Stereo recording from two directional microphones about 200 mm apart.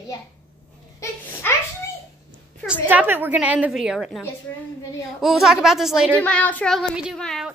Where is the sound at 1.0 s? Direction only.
10° left (ahead or behind).